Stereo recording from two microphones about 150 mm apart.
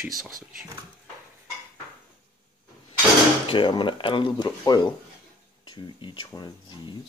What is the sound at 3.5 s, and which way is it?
Speech, 35° left (ahead or behind).